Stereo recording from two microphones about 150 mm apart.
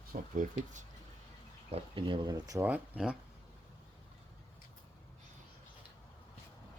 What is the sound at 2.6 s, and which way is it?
Speech, 10° right (ahead or behind).